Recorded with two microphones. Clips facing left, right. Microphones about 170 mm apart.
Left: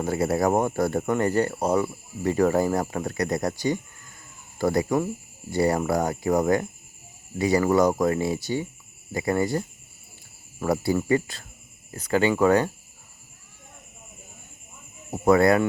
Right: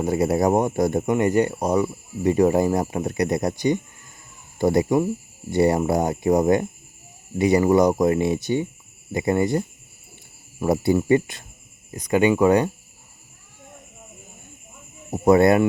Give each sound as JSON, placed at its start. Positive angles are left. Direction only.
{"t": 0.0, "sound": "speech", "side_deg": -20}
{"t": 15.1, "sound": "speech", "side_deg": -20}